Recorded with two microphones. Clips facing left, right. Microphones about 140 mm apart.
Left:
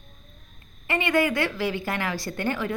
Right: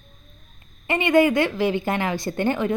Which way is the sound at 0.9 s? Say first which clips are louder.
Right 6 dB; 20° right (ahead or behind).